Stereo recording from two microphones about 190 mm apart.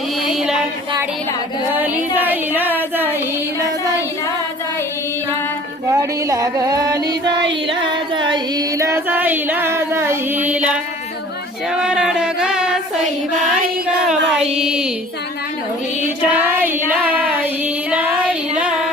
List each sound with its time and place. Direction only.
0.3 s music: centre (ahead or behind)
1.7 s music: 10° right (ahead or behind)
5.9 s music: 15° right (ahead or behind)
11.7 s a sound: 5° right (ahead or behind)
13.8 s a sound: 5° right (ahead or behind)
14.5 s speech: 5° right (ahead or behind)
16.0 s music: 10° right (ahead or behind)